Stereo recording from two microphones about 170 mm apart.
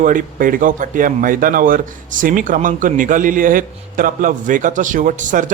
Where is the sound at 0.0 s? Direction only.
50° right (ahead or behind).